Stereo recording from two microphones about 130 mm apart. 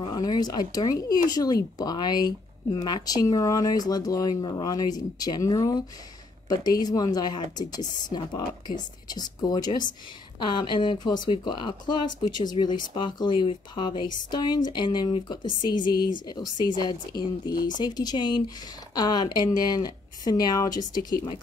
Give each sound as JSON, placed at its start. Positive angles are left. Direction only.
{"t": 0.1, "sound": "speech", "side_deg": 30}